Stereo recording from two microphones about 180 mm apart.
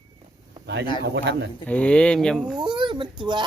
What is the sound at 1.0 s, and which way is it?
Speech, 75° right (ahead or behind).